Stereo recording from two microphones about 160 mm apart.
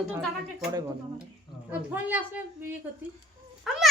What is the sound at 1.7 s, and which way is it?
Speech, 10° right (ahead or behind).